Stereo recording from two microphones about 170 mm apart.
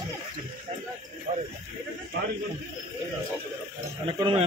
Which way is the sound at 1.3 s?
40° right (ahead or behind).